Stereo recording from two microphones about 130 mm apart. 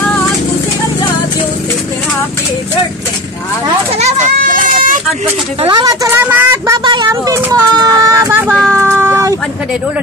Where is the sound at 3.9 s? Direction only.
75° right (ahead or behind); by 4.9 s 90° right.